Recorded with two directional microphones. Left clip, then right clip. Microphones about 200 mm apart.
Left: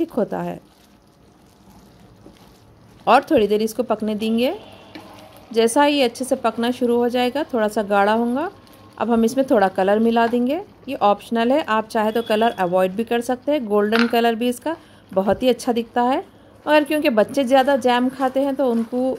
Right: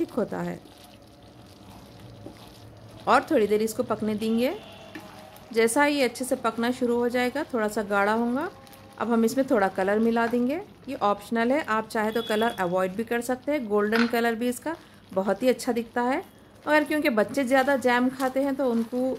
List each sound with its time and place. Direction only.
0.1 s a woman's voice: 15° left (ahead or behind)
3.1 s a woman's voice: 15° left (ahead or behind)